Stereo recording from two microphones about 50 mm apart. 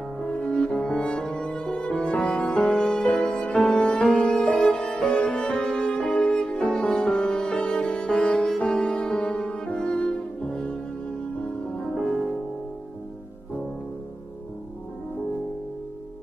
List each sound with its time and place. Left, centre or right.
0.3 s cello: left
0.8 s music: centre
4.2 s violin: left
4.6 s music: centre
11.8 s music: centre